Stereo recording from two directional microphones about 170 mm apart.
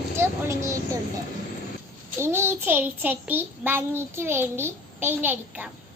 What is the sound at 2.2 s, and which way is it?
Child singing, 15° right (ahead or behind).